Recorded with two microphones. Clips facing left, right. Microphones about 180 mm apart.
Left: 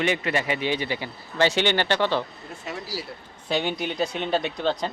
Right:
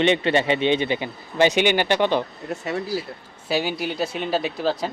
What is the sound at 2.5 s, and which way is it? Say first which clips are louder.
Speech: right 8 dB; 70° right (ahead or behind).